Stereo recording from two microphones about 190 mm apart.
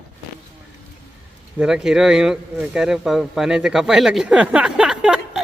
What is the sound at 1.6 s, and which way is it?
Speech, 5° right (ahead or behind).